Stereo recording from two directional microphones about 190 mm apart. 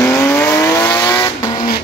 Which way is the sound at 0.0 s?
15° left (ahead or behind).